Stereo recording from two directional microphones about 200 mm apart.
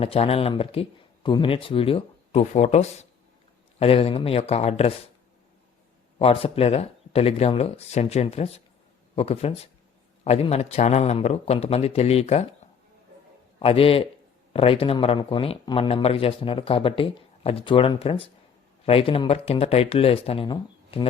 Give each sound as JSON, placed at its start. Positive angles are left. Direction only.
{"t": 0.0, "sound": "speech", "side_deg": 30}
{"t": 6.1, "sound": "speech", "side_deg": 30}
{"t": 13.6, "sound": "speech", "side_deg": 30}